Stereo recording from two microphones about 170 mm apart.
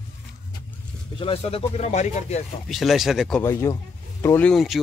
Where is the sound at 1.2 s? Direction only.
35° left (ahead or behind).